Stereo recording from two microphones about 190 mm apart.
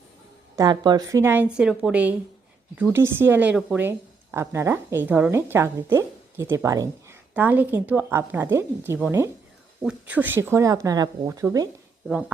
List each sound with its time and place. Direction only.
0.5 s a woman's voice: 20° right (ahead or behind)